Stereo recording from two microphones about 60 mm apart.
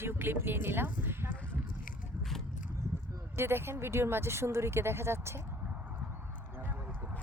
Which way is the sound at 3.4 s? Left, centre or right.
Right.